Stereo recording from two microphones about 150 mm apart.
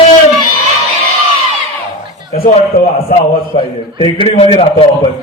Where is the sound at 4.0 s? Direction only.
35° left (ahead or behind).